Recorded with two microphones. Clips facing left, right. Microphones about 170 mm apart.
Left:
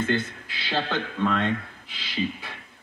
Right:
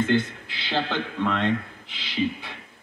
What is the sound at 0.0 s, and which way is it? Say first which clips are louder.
Speech: right 3 dB; 20° right (ahead or behind).